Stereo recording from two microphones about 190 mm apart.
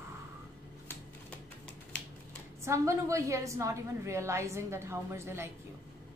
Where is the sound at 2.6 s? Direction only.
15° right (ahead or behind).